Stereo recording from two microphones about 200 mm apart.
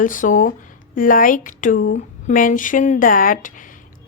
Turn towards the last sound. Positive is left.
turn(degrees=40)  # may be behind; listen again after turning